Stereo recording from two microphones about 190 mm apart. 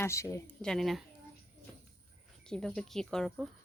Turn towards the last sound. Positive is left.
turn(degrees=0)  # may be behind; listen again after turning